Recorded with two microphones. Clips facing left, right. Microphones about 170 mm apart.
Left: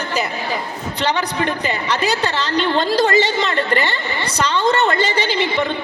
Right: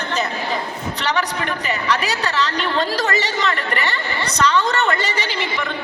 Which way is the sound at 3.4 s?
25° left (ahead or behind).